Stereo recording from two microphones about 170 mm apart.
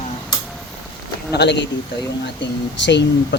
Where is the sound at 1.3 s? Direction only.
90° left.